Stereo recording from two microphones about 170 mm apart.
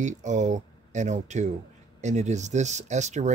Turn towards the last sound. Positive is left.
turn(degrees=-45)  # may be behind; listen again after turning